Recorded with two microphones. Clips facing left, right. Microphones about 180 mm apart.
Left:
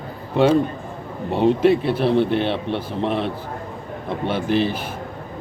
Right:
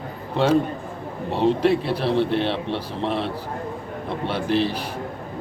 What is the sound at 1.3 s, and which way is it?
A man's voice, centre (ahead or behind).